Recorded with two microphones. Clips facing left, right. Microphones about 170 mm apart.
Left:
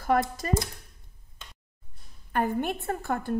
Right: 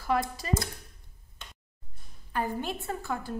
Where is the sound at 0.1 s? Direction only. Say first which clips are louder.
Left 3 dB; 50° left (ahead or behind).